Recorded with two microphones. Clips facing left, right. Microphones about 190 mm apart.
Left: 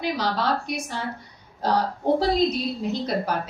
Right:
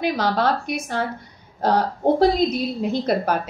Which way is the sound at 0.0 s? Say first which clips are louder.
Right 5 dB; 55° right (ahead or behind).